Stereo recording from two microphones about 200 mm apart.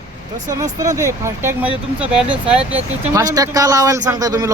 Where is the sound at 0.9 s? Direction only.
15° right (ahead or behind).